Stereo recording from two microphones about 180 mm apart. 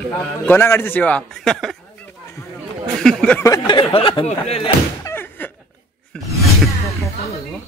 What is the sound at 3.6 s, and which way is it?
Speech, 30° left (ahead or behind).